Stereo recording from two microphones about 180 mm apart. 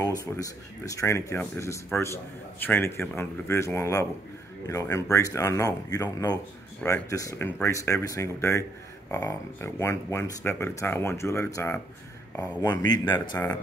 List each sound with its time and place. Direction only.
0.2 s speech: 20° left (ahead or behind)
12.6 s speech: 20° left (ahead or behind)